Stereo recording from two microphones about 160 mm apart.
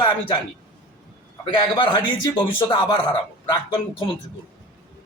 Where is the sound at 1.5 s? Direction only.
30° left (ahead or behind).